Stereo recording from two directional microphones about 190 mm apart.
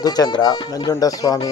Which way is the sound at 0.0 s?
20° left (ahead or behind).